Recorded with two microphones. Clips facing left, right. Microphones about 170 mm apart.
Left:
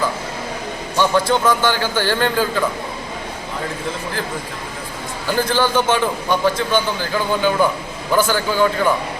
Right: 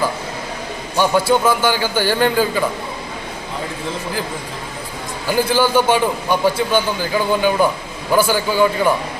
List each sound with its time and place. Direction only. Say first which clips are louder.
0.9 s a man's voice: right 2 dB; 10° right (ahead or behind)
5.3 s a man's voice: right 2 dB; 10° right (ahead or behind)